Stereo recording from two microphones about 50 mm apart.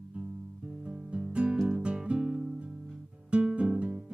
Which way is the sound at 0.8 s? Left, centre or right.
Right.